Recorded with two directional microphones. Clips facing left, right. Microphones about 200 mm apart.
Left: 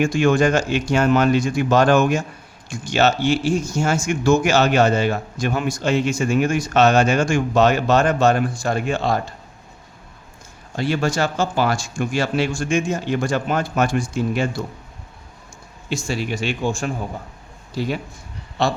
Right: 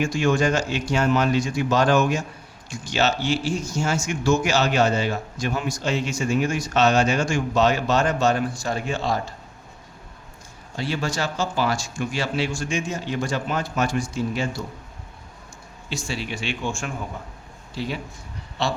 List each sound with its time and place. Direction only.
0.0 s a man's voice: 55° left (ahead or behind)
10.8 s a man's voice: 55° left (ahead or behind)
15.9 s a man's voice: 45° left (ahead or behind)